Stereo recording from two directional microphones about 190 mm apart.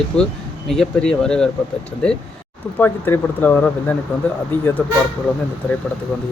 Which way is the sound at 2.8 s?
10° left (ahead or behind).